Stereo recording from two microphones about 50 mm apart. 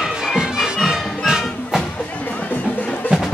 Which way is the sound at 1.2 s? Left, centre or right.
Centre.